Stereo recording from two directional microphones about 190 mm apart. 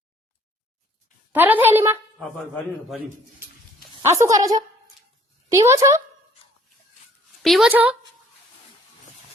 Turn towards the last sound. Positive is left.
turn(degrees=-5)  # may be behind; listen again after turning